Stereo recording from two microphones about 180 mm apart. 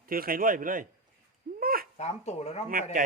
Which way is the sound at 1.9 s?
35° left (ahead or behind).